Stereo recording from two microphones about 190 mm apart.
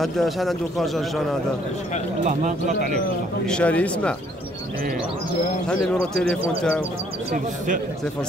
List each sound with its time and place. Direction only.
0.0 s a man's voice: centre (ahead or behind)
2.2 s speech: 40° right (ahead or behind)
3.4 s speech: 5° left (ahead or behind)
5.7 s a man's voice: 5° left (ahead or behind)
7.3 s a man's voice: 45° right (ahead or behind)